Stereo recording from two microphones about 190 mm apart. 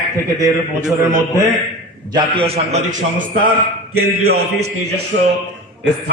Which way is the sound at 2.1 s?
35° right (ahead or behind).